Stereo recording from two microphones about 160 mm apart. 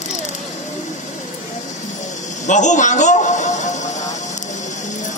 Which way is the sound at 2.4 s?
50° left (ahead or behind).